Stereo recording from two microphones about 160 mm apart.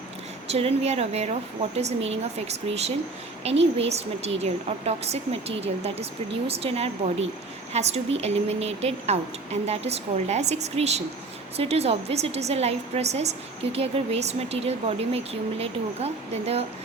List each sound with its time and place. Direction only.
0.4 s a woman's voice: 40° right (ahead or behind)